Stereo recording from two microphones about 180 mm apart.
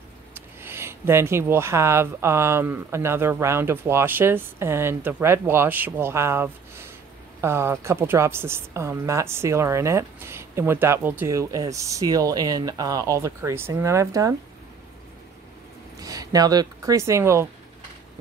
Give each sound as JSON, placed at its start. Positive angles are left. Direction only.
{"t": 0.3, "sound": "a woman's voice", "side_deg": -15}
{"t": 16.0, "sound": "speech", "side_deg": -20}